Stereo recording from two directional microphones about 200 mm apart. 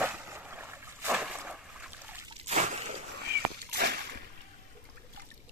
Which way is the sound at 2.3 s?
35° right (ahead or behind).